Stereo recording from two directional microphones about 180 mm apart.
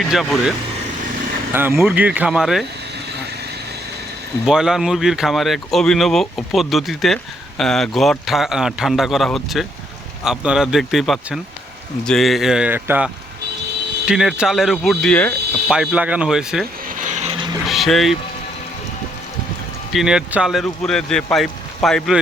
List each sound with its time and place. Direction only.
0.0 s speech: centre (ahead or behind)
1.5 s speech: 10° right (ahead or behind)
4.4 s speech: 5° right (ahead or behind)
15.7 s speech: 5° right (ahead or behind)
17.0 s a sound: 40° right (ahead or behind)
17.7 s speech: centre (ahead or behind)
19.9 s speech: centre (ahead or behind)